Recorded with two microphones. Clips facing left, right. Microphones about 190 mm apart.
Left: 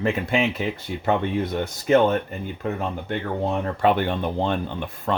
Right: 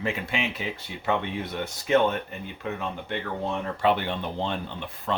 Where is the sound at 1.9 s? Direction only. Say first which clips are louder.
Left 4 dB; 45° left (ahead or behind).